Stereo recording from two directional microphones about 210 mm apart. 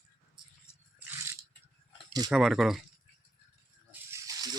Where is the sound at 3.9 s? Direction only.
15° right (ahead or behind).